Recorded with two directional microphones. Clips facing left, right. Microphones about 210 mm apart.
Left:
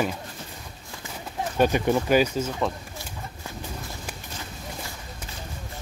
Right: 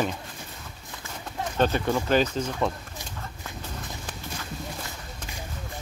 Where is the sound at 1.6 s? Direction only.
15° left (ahead or behind).